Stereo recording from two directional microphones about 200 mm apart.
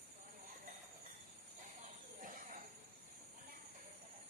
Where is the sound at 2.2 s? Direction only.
45° right (ahead or behind).